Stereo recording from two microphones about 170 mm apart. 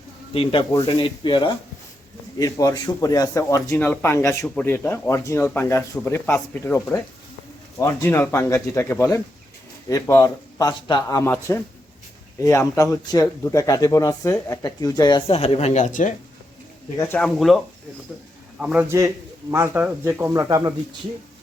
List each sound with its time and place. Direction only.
0.9 s speech: 30° left (ahead or behind)
15.3 s speech: 40° left (ahead or behind)
17.2 s speech: centre (ahead or behind)
18.6 s a man's voice: 10° right (ahead or behind)